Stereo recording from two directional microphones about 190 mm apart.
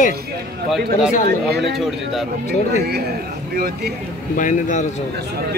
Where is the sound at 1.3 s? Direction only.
55° right (ahead or behind).